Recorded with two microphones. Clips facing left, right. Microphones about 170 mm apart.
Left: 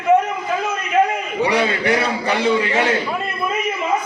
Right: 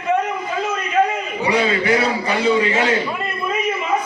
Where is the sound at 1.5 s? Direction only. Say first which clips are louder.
Right 3 dB; 60° left (ahead or behind).